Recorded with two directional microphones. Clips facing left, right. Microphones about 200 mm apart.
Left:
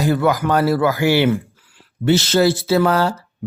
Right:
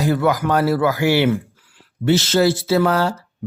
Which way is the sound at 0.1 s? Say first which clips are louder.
Left 1 dB; 30° left (ahead or behind).